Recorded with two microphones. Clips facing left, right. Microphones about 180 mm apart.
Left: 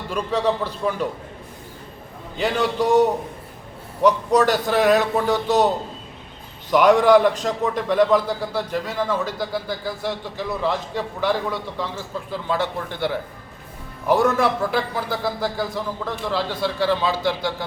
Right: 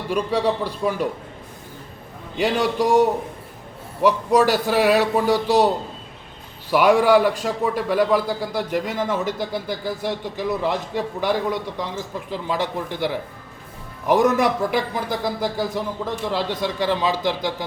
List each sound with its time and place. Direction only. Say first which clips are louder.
0.1 s a man's voice: right 1 dB; 10° right (ahead or behind)
2.4 s a man's voice: right 1 dB; 10° right (ahead or behind)
12.5 s a man's voice: even; 15° right (ahead or behind)